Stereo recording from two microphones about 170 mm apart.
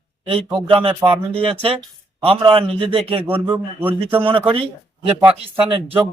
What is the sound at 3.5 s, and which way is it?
Speech, 10° right (ahead or behind).